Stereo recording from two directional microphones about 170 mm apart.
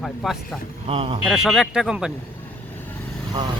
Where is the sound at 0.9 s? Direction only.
35° right (ahead or behind).